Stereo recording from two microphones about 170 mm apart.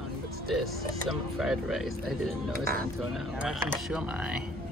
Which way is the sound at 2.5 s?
60° right (ahead or behind).